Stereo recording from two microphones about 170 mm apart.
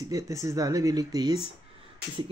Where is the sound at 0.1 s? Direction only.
20° right (ahead or behind).